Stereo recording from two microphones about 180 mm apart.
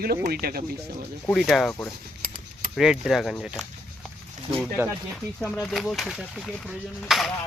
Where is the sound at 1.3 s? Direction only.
Centre (ahead or behind).